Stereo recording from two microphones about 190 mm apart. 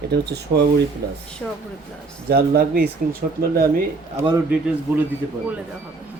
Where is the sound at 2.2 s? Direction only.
55° right (ahead or behind).